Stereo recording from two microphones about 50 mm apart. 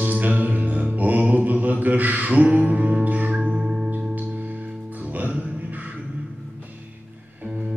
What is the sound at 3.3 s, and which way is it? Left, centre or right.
Singing bowl, right.